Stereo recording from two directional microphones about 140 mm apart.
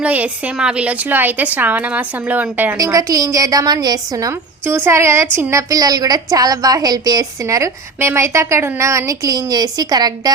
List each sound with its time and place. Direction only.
0.0 s speech: 10° right (ahead or behind)
2.7 s a woman's voice: 25° right (ahead or behind)